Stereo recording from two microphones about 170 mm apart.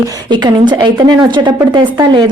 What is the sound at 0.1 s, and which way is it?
A woman's voice, 25° right (ahead or behind).